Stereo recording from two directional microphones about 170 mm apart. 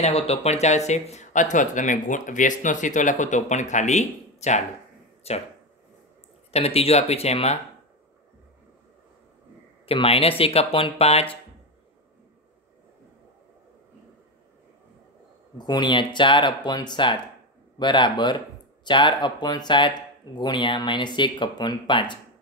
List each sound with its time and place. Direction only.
0.0 s speech: 40° left (ahead or behind)
6.5 s speech: 35° left (ahead or behind)
9.8 s speech: 35° left (ahead or behind)
15.5 s speech: 25° left (ahead or behind)